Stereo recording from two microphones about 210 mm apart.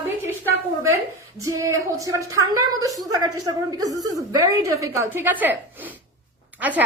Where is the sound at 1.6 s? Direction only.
15° right (ahead or behind).